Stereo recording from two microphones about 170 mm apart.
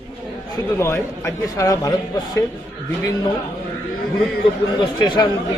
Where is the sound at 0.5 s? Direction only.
15° left (ahead or behind).